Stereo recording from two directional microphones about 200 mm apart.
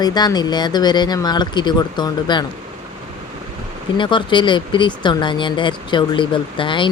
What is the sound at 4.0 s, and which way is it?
Speech, 25° left (ahead or behind).